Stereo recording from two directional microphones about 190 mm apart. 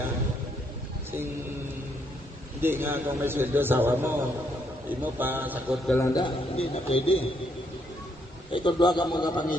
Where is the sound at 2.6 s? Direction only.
10° right (ahead or behind).